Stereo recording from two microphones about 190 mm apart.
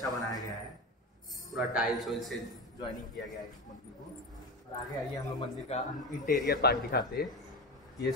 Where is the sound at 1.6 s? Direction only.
5° right (ahead or behind).